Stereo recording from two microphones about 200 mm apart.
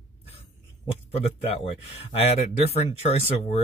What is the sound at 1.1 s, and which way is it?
Speech, 30° left (ahead or behind).